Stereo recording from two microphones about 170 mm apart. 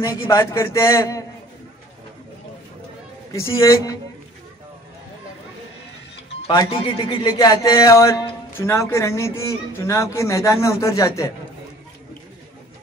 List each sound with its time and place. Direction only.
0.0 s speech: 15° left (ahead or behind)
3.3 s speech: 15° left (ahead or behind)
6.4 s speech: 30° left (ahead or behind)